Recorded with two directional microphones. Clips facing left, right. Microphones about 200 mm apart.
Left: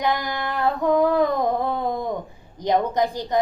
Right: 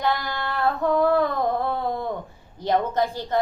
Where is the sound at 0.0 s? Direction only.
15° left (ahead or behind).